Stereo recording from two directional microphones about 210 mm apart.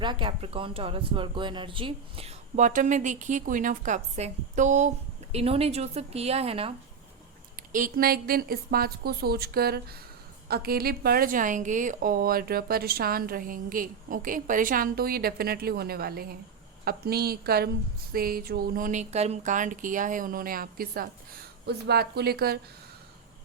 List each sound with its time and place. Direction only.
0.0 s speech: 25° right (ahead or behind)
7.7 s a woman's voice: 40° right (ahead or behind)